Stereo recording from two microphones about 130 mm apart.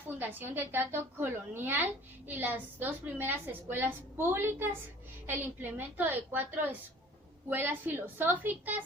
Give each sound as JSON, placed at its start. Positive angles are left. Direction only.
{"t": 0.2, "sound": "a woman's voice", "side_deg": -15}